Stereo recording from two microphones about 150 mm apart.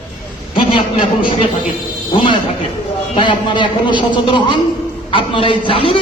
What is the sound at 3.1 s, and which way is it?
Speech, 30° left (ahead or behind).